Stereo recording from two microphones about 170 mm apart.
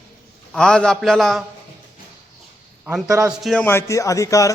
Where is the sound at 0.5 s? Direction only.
5° left (ahead or behind).